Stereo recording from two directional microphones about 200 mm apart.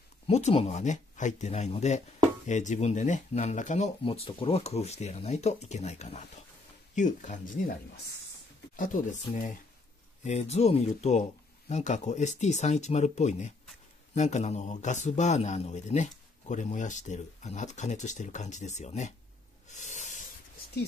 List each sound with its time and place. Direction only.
0.3 s a man's voice: 30° left (ahead or behind)
9.2 s a man's voice: 40° left (ahead or behind)
19.7 s a sound: 35° left (ahead or behind)